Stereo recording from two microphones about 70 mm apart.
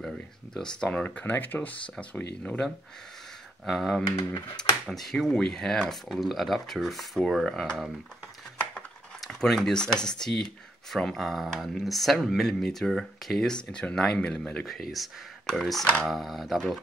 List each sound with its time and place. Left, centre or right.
0.6 s speech: centre
3.6 s speech: centre
9.2 s speech: centre
14.7 s speech: centre